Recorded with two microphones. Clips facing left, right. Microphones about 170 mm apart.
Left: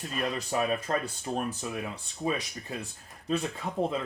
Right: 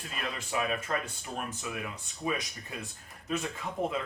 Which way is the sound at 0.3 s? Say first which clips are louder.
Left 1 dB; 35° left (ahead or behind).